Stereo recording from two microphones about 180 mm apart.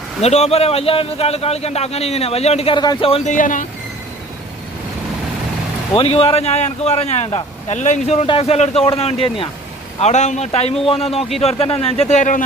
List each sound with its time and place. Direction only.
0.2 s a man's voice: 35° left (ahead or behind)
3.3 s speech: 45° left (ahead or behind)
5.9 s a man's voice: 30° left (ahead or behind)